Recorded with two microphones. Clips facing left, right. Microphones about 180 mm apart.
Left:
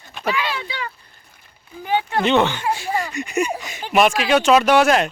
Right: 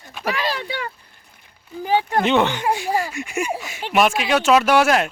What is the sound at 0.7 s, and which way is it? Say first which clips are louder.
Speech: right 2 dB; 55° right (ahead or behind).